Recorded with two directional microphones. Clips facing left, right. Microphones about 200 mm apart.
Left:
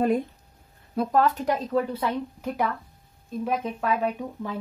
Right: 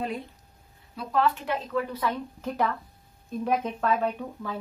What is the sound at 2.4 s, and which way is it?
Speech, 10° left (ahead or behind).